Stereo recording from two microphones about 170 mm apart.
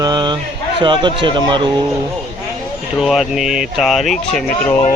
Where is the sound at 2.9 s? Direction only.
Centre (ahead or behind).